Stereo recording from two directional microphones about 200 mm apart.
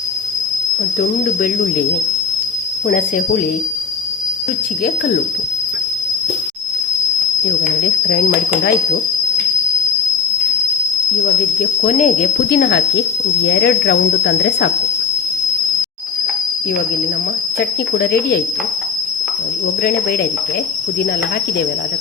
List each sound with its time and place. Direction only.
11.8 s speech: 40° left (ahead or behind)
12.5 s speech: 60° left (ahead or behind)
17.6 s speech: 50° left (ahead or behind)